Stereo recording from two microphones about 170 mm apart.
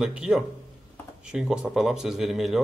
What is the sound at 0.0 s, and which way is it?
Speech, 5° right (ahead or behind).